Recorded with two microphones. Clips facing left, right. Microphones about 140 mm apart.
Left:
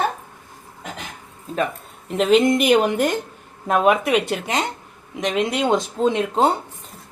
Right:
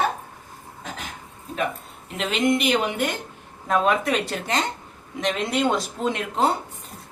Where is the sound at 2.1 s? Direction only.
40° left (ahead or behind).